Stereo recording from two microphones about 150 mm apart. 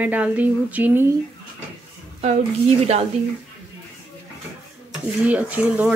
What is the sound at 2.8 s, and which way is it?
Speech, 45° right (ahead or behind).